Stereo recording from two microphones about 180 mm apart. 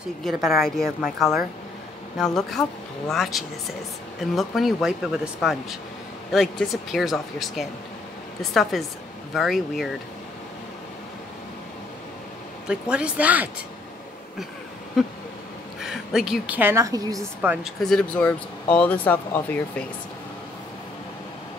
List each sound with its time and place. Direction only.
0.2 s speech: centre (ahead or behind)
12.9 s speech: 5° right (ahead or behind)
15.8 s a woman's voice: centre (ahead or behind); by 17.2 s 20° right (ahead or behind)
17.4 s speech: 5° right (ahead or behind)